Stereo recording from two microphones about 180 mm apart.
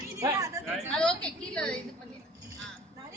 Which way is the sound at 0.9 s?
5° left (ahead or behind).